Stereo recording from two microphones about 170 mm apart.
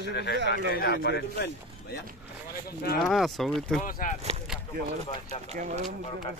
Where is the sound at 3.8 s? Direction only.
50° left (ahead or behind).